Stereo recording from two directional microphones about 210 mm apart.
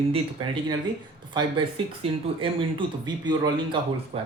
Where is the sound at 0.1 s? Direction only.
25° right (ahead or behind).